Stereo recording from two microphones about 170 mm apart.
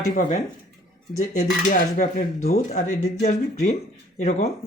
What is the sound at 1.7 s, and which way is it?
Speech, 45° left (ahead or behind).